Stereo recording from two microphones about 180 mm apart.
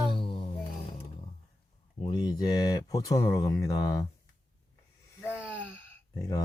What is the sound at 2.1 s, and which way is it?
Speech, 20° left (ahead or behind).